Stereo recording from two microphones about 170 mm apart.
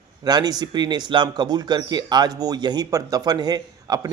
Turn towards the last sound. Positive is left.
turn(degrees=-20)  # may be behind; listen again after turning